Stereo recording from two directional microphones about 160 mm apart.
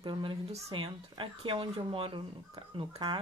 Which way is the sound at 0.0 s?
30° right (ahead or behind).